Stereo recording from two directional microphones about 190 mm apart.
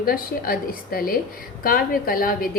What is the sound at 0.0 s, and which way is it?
A woman's voice, 50° left (ahead or behind).